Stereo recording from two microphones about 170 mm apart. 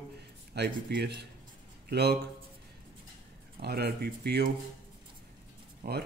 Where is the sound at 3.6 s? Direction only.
70° right (ahead or behind).